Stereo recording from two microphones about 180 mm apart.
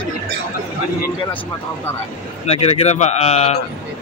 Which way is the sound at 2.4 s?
35° left (ahead or behind).